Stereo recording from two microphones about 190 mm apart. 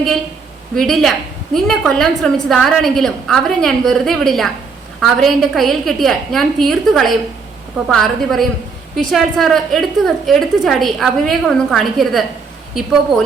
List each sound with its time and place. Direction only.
0.8 s a woman's voice: centre (ahead or behind)